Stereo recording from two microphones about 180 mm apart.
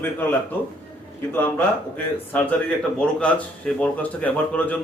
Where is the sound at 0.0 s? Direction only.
10° left (ahead or behind).